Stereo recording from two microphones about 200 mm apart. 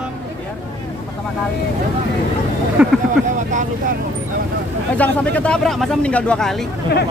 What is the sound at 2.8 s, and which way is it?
Speech, 5° right (ahead or behind).